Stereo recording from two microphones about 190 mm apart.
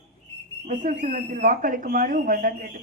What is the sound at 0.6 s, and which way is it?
Speech, 40° right (ahead or behind).